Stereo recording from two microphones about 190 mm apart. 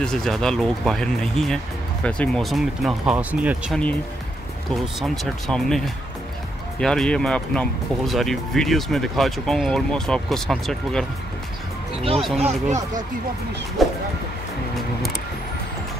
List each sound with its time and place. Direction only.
0.0 s speech: 5° left (ahead or behind)
12.4 s speech: 40° right (ahead or behind)
13.8 s music: centre (ahead or behind)